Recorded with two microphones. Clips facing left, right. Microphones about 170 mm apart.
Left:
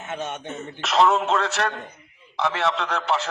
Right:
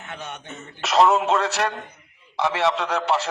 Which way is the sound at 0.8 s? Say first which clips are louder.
Right 2 dB; centre (ahead or behind).